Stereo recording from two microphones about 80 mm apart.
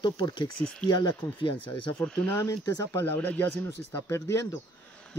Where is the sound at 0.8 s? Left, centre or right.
Left.